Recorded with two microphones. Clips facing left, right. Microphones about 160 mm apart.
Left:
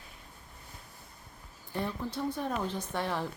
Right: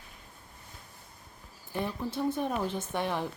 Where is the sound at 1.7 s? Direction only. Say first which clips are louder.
Right 2 dB; 15° right (ahead or behind).